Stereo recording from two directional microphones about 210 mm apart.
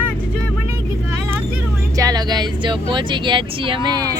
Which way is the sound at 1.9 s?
15° right (ahead or behind).